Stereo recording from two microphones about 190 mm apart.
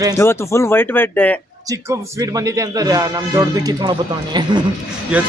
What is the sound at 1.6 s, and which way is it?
Speech, 15° right (ahead or behind).